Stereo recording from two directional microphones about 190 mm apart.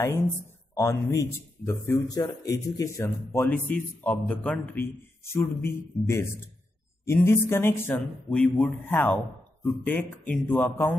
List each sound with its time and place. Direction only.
0.7 s speech: 15° left (ahead or behind)